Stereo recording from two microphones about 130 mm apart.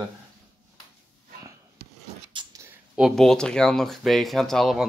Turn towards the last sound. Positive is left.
turn(degrees=0)  # may be behind; listen again after turning